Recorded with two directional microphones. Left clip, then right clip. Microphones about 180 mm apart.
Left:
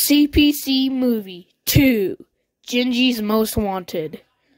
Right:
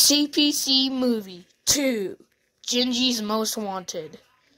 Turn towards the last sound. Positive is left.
turn(degrees=50)  # may be behind; listen again after turning